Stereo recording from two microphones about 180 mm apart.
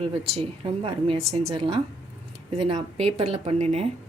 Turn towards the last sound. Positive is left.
turn(degrees=-35)  # may be behind; listen again after turning